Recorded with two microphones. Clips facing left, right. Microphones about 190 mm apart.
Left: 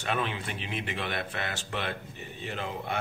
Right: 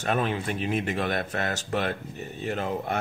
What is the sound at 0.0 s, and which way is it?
Speech, 45° right (ahead or behind).